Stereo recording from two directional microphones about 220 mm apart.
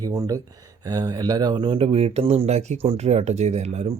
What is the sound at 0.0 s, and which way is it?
A man's voice, 15° right (ahead or behind).